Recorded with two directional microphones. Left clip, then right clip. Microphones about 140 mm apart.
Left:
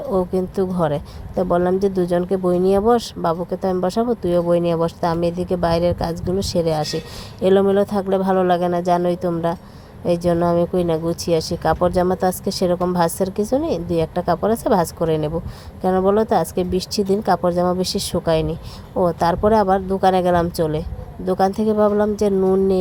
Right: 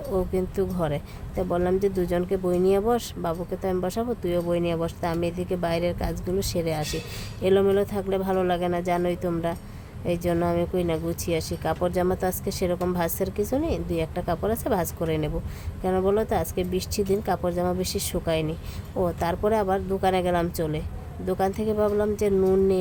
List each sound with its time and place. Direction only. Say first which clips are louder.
0.1 s speech: left 6 dB; 20° left (ahead or behind)
22.4 s speech: left 3 dB; 10° left (ahead or behind)